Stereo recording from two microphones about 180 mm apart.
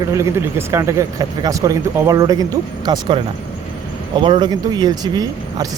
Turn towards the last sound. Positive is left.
turn(degrees=-20)  # may be behind; listen again after turning